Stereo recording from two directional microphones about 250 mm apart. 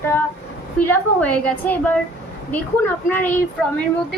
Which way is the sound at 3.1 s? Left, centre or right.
Centre.